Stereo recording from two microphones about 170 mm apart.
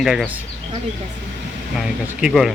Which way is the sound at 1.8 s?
5° right (ahead or behind).